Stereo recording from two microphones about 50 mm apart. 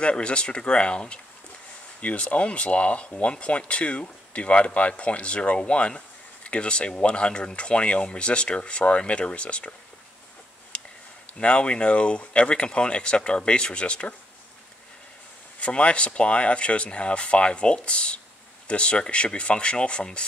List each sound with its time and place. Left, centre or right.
0.0 s speech: left
10.7 s a sound: left
11.3 s speech: left
15.6 s speech: left